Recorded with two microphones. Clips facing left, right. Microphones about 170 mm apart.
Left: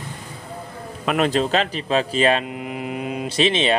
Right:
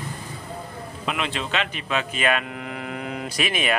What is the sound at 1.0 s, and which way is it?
Speech, 45° left (ahead or behind).